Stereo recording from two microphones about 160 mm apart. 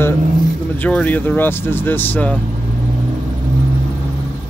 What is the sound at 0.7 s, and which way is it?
Speech, 10° left (ahead or behind).